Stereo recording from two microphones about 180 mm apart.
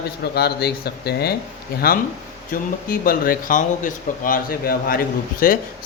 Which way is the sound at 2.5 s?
55° left (ahead or behind).